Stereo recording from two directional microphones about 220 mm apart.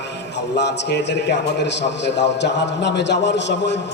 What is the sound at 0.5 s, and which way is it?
A man's voice, 50° left (ahead or behind).